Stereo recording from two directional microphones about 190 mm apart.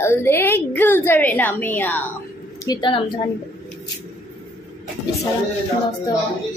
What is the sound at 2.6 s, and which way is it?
Speech, 20° left (ahead or behind).